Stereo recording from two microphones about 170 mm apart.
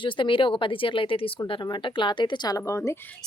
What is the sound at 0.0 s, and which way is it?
Speech, 30° left (ahead or behind).